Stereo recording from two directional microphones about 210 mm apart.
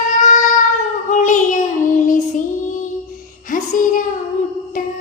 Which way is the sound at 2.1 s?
35° left (ahead or behind).